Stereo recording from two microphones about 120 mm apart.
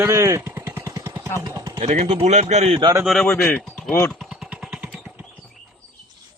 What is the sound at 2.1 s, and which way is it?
Speech, 60° right (ahead or behind).